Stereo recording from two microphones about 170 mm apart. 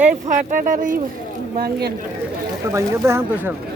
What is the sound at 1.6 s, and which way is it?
Speech, 70° right (ahead or behind).